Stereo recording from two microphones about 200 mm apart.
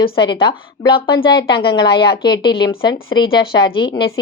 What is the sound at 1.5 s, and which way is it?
Speech, 55° left (ahead or behind).